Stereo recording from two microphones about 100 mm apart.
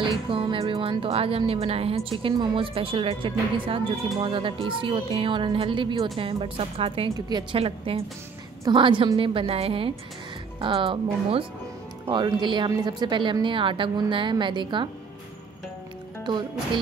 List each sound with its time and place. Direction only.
0.3 s a woman's voice: 65° right (ahead or behind)
2.3 s speech: 55° right (ahead or behind)
6.1 s a woman's voice: 65° right (ahead or behind)
7.2 s speech: 45° right (ahead or behind)
7.5 s a woman's voice: 75° right (ahead or behind)
8.7 s speech: 55° right (ahead or behind)
10.6 s speech: 60° right (ahead or behind)
12.1 s speech: 45° right (ahead or behind)
16.3 s speech: 50° right (ahead or behind)